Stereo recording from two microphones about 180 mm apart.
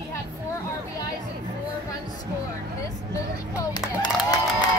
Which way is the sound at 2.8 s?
20° left (ahead or behind).